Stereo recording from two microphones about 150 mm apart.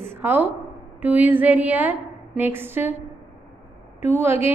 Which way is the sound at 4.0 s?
15° right (ahead or behind).